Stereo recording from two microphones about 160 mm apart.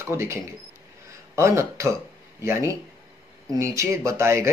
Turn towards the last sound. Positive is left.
turn(degrees=-20)  # may be behind; listen again after turning